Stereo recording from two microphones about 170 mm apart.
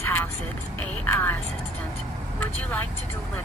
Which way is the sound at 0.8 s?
10° left (ahead or behind).